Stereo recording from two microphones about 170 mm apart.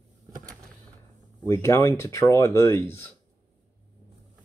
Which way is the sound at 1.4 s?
15° left (ahead or behind).